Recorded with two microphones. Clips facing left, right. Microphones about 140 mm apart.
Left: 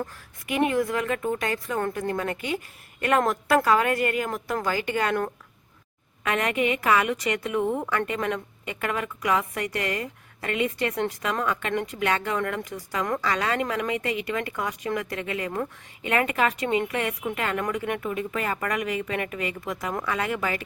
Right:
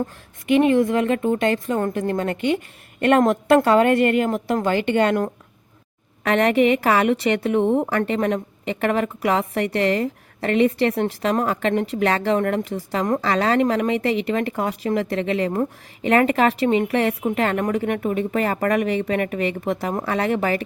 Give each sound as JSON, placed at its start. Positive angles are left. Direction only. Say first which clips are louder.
{"t": 0.0, "sound": "a woman's voice", "louder": "right 6 dB", "side_deg": -25}